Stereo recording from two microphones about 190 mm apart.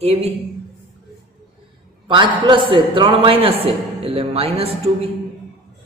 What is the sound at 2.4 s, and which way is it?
A man's voice, 25° right (ahead or behind).